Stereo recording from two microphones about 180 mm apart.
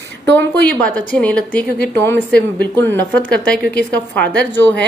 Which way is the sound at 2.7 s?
10° left (ahead or behind).